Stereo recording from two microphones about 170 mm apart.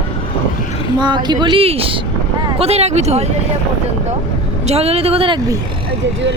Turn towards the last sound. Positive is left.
turn(degrees=-25)  # may be behind; listen again after turning